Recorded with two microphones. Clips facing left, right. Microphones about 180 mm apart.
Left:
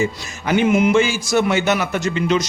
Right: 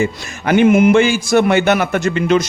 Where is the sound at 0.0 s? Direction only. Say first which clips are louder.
Right 3 dB; 60° right (ahead or behind).